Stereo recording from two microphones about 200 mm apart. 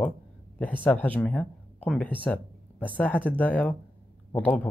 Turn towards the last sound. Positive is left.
turn(degrees=10)  # may be behind; listen again after turning